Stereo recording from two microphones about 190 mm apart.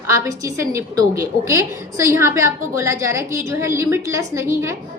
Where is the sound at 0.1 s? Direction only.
15° right (ahead or behind).